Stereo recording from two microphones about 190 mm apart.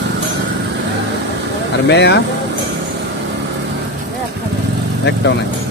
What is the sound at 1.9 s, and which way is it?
Speech, 65° left (ahead or behind).